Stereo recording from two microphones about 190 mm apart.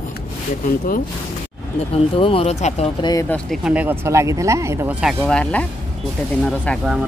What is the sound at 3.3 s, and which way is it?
Speech, centre (ahead or behind).